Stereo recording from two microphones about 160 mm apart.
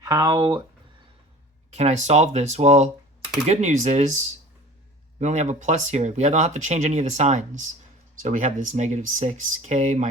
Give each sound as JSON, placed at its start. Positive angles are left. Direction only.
{"t": 0.0, "sound": "speech", "side_deg": -20}
{"t": 1.7, "sound": "speech", "side_deg": -45}
{"t": 5.2, "sound": "speech", "side_deg": -45}